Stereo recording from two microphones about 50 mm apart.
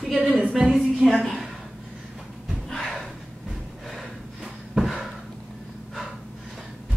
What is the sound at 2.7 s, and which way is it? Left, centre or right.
Gasp, centre.